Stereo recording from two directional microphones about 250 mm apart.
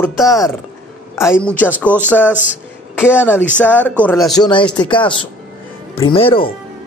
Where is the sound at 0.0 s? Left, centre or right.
Centre.